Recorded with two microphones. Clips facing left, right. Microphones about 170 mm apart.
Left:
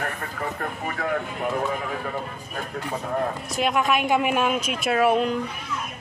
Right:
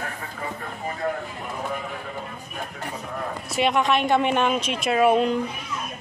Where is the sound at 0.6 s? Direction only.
75° left (ahead or behind).